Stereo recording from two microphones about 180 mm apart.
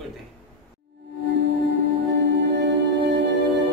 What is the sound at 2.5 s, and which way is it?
Music, 70° right (ahead or behind).